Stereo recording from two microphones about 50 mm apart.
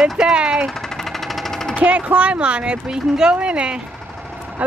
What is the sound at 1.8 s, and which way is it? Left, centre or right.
Speech, right.